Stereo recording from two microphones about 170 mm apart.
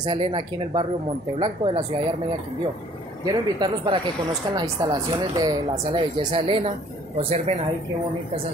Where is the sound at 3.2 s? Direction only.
25° right (ahead or behind).